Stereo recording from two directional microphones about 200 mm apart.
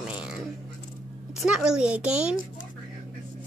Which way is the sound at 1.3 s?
5° right (ahead or behind).